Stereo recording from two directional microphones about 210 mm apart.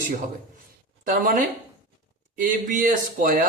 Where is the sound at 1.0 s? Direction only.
40° right (ahead or behind).